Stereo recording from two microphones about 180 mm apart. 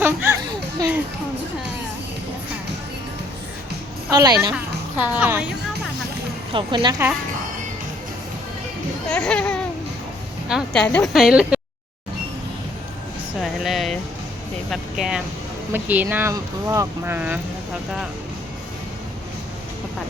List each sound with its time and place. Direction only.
0.0 s a sound: 10° right (ahead or behind)
4.1 s a woman's voice: 20° right (ahead or behind)
4.5 s a woman's voice: 10° right (ahead or behind)
6.5 s a woman's voice: 30° right (ahead or behind)
9.0 s speech: 5° left (ahead or behind)
13.4 s speech: centre (ahead or behind)